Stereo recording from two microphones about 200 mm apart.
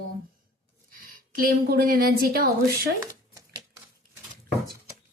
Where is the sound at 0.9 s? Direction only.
45° right (ahead or behind).